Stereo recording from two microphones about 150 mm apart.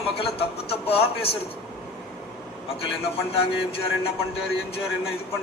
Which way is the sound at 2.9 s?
40° left (ahead or behind).